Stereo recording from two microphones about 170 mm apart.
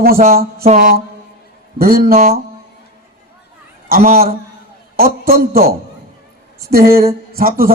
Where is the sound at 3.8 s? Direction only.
60° right (ahead or behind).